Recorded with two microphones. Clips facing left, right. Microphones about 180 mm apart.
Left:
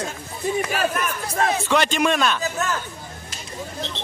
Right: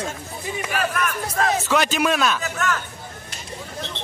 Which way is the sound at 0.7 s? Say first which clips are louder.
Even; 30° left (ahead or behind).